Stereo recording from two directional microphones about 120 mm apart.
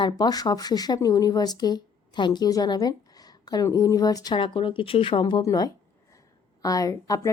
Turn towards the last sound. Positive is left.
turn(degrees=30)  # may be behind; listen again after turning